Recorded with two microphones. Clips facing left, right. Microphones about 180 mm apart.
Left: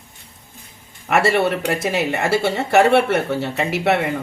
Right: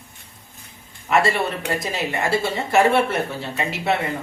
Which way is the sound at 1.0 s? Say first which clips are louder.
Left 3 dB; 70° left (ahead or behind).